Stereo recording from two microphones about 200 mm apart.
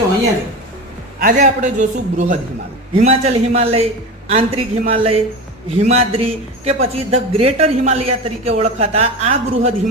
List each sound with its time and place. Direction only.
1.2 s a woman's voice: 40° right (ahead or behind)